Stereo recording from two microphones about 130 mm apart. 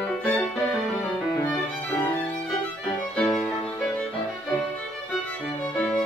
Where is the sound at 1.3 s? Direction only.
30° left (ahead or behind).